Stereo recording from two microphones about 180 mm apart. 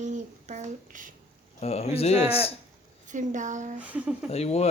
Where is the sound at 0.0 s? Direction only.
40° right (ahead or behind).